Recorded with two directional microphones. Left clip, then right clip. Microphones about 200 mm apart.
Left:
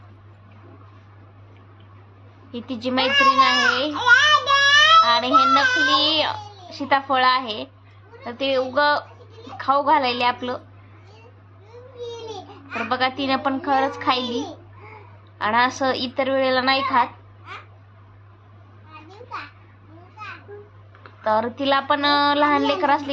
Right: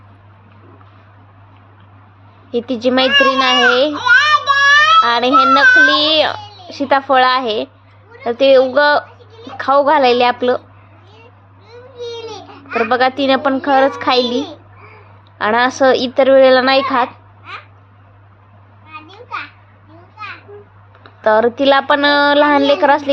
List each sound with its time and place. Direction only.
2.5 s a woman's voice: 30° right (ahead or behind)
3.9 s child singing: 20° left (ahead or behind)
4.9 s a woman's voice: 30° right (ahead or behind)
12.9 s a woman's voice: 30° right (ahead or behind)
21.2 s a woman's voice: 30° right (ahead or behind)